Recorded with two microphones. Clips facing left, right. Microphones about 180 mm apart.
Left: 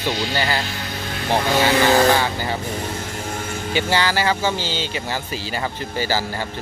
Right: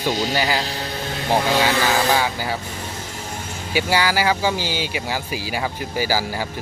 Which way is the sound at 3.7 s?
10° right (ahead or behind).